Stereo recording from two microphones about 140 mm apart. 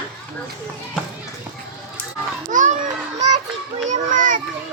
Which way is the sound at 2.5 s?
65° right (ahead or behind).